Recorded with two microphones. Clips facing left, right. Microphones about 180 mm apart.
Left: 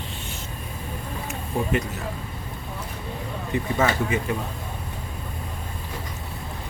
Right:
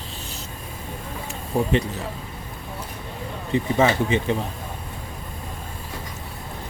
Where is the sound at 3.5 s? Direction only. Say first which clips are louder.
Right 4 dB; 25° right (ahead or behind).